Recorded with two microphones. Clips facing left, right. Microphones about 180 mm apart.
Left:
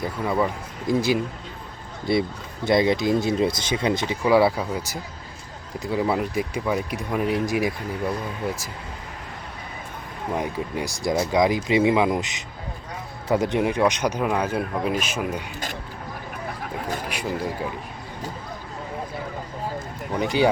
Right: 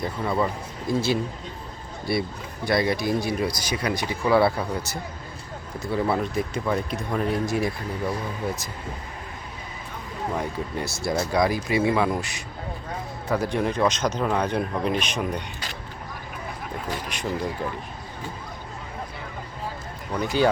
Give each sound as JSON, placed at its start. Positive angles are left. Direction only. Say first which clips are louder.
{"t": 0.0, "sound": "speech", "louder": "left 1 dB", "side_deg": 10}
{"t": 10.3, "sound": "speech", "louder": "left 4 dB", "side_deg": 15}
{"t": 17.1, "sound": "speech", "louder": "left 1 dB", "side_deg": 10}
{"t": 20.1, "sound": "speech", "louder": "left 1 dB", "side_deg": 15}